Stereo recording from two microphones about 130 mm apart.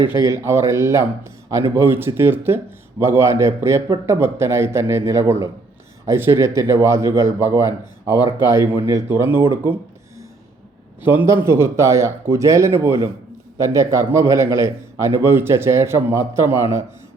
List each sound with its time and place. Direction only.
0.2 s a man's voice: 20° right (ahead or behind)
11.0 s a man's voice: 15° right (ahead or behind)